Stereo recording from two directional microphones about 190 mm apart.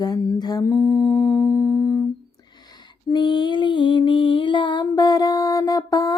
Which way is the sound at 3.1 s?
25° left (ahead or behind).